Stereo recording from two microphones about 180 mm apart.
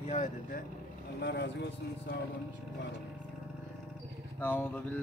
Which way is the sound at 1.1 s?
70° left (ahead or behind).